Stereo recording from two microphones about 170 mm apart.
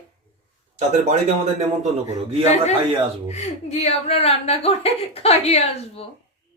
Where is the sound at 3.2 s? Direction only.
40° left (ahead or behind).